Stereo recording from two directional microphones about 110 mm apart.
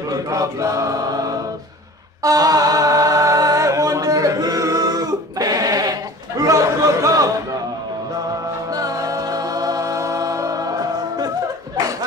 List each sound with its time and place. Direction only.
0.1 s chant: 30° right (ahead or behind)
2.2 s music: 35° right (ahead or behind)
8.7 s music: 35° right (ahead or behind)